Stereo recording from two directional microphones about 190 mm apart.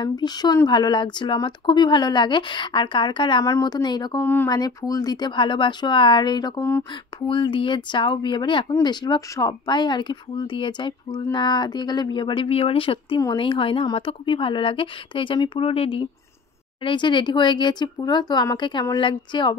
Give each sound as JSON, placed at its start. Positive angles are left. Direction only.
{"t": 0.0, "sound": "speech", "side_deg": 20}
{"t": 4.2, "sound": "speech", "side_deg": 10}